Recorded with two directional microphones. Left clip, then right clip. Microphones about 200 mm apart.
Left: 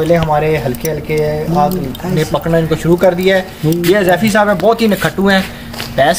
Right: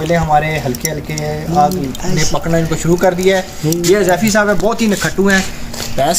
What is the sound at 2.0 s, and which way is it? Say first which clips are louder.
Speech: left 3 dB; 50° left (ahead or behind).